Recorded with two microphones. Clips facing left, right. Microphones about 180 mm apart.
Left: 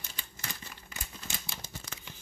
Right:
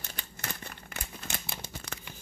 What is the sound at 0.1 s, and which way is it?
Crumpling, 60° right (ahead or behind).